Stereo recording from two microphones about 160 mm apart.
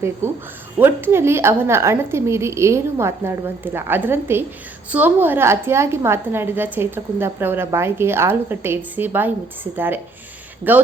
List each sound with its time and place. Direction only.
0.2 s a woman's voice: 15° right (ahead or behind)